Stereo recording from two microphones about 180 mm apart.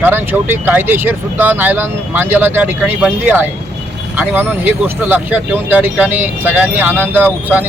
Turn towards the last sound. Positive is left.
turn(degrees=-10)  # may be behind; listen again after turning